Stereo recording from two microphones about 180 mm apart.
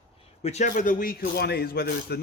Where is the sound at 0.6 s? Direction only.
50° left (ahead or behind).